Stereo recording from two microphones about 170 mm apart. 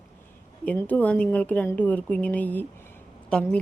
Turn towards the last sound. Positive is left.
turn(degrees=5)  # may be behind; listen again after turning